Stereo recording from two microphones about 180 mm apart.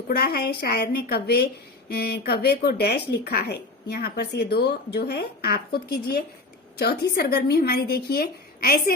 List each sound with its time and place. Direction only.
0.1 s speech: 60° left (ahead or behind)